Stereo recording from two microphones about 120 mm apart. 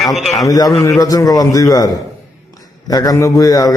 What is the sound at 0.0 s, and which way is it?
Speech, centre (ahead or behind).